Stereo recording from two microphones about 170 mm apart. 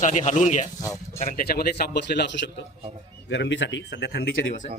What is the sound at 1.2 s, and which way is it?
Speech, 60° left (ahead or behind).